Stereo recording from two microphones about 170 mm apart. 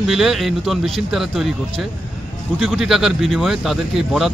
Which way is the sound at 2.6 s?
Centre (ahead or behind).